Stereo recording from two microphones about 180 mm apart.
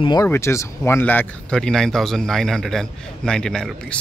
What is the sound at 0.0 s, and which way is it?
Speech, 25° left (ahead or behind).